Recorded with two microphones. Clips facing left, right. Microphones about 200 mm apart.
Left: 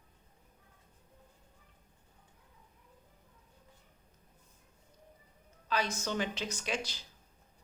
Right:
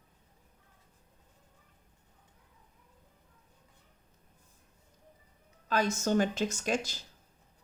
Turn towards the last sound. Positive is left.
turn(degrees=-45)  # may be behind; listen again after turning